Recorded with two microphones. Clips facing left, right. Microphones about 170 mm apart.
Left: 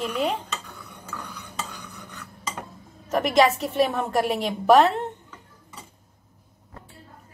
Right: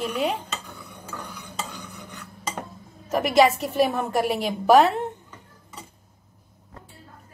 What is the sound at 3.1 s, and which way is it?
A woman's voice, 5° right (ahead or behind).